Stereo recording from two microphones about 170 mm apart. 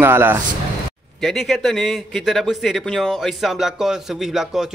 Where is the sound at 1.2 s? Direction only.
Centre (ahead or behind).